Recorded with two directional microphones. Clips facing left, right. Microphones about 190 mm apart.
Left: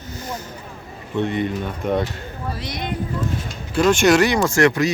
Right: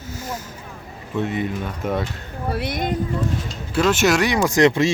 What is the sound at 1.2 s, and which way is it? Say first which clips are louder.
Speech: left 2 dB; 5° right (ahead or behind).